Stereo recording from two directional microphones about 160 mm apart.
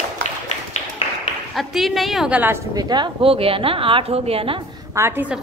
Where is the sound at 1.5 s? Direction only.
Centre (ahead or behind).